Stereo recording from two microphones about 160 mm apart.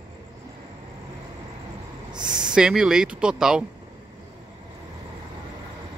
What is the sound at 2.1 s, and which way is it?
Speech, 25° right (ahead or behind).